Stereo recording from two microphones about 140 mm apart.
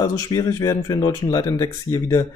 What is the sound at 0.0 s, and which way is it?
Speech, 25° left (ahead or behind).